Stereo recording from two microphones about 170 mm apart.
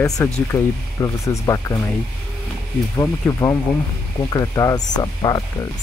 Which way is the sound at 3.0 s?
15° left (ahead or behind).